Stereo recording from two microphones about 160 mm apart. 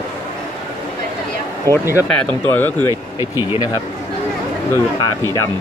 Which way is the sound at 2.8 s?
20° right (ahead or behind).